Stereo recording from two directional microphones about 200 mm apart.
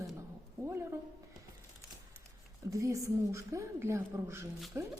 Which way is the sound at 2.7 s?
15° right (ahead or behind).